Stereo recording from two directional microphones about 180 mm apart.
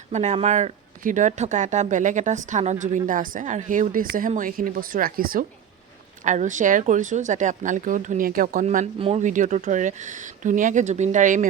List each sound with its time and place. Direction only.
0.1 s speech: 40° right (ahead or behind)
8.6 s speech: 40° right (ahead or behind)